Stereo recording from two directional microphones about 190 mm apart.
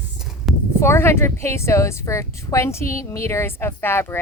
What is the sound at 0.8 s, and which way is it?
Speech, 15° left (ahead or behind).